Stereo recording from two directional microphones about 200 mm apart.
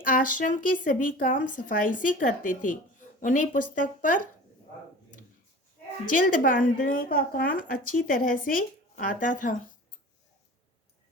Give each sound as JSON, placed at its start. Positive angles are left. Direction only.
{"t": 0.0, "sound": "speech", "side_deg": 40}
{"t": 6.1, "sound": "speech", "side_deg": 40}